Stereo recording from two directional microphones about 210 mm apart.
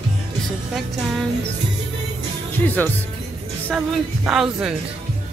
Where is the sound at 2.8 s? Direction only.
10° left (ahead or behind).